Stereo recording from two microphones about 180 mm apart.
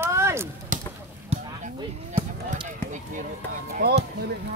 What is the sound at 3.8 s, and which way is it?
Speech, 70° right (ahead or behind).